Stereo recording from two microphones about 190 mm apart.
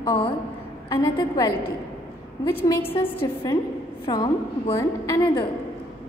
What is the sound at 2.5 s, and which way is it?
Speech, 10° left (ahead or behind).